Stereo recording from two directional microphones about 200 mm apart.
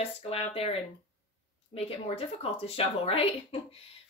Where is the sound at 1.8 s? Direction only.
30° left (ahead or behind).